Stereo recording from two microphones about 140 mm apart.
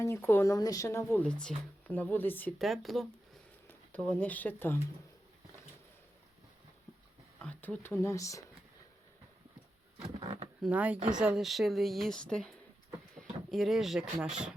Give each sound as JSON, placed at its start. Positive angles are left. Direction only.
{"t": 0.0, "sound": "a woman's voice", "side_deg": 15}
{"t": 1.2, "sound": "speech", "side_deg": 5}
{"t": 2.6, "sound": "speech", "side_deg": 0}
{"t": 3.7, "sound": "speech", "side_deg": 10}
{"t": 7.4, "sound": "a woman's voice", "side_deg": 10}
{"t": 10.2, "sound": "speech", "side_deg": -40}
{"t": 10.7, "sound": "speech", "side_deg": -10}